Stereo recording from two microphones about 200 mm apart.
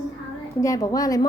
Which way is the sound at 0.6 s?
15° left (ahead or behind).